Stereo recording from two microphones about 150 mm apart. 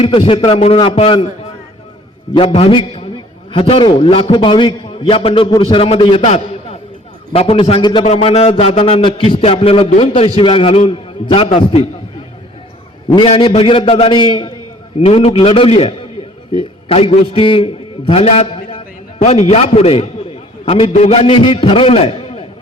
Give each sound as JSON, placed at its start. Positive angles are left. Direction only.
{"t": 0.0, "sound": "a man's voice", "side_deg": 40}
{"t": 2.3, "sound": "a man's voice", "side_deg": 40}
{"t": 8.0, "sound": "a man's voice", "side_deg": 45}
{"t": 13.1, "sound": "a man's voice", "side_deg": 40}